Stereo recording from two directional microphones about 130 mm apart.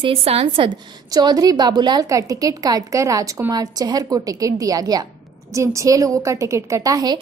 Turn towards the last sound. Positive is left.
turn(degrees=-30)  # may be behind; listen again after turning